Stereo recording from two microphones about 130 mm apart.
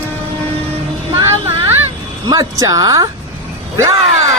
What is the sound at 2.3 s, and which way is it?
Speech, 25° right (ahead or behind).